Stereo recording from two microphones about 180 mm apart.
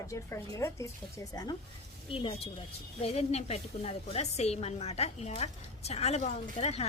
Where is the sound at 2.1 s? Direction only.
30° left (ahead or behind).